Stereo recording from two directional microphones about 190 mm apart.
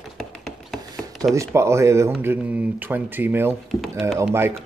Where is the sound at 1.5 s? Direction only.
15° right (ahead or behind).